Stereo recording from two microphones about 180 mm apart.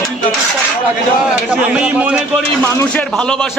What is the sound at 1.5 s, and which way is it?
Speech, 10° right (ahead or behind).